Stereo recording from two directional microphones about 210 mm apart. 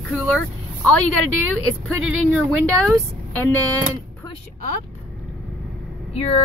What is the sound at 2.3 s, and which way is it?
Speech, centre (ahead or behind).